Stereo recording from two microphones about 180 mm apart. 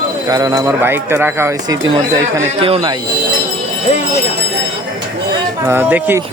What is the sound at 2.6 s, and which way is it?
Speech, 30° right (ahead or behind).